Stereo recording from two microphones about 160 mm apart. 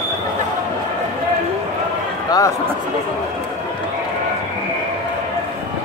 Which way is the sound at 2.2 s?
25° left (ahead or behind).